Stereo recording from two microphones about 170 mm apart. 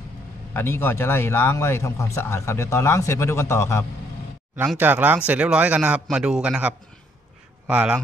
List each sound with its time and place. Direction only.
0.5 s speech: 15° left (ahead or behind)
4.6 s speech: 10° right (ahead or behind)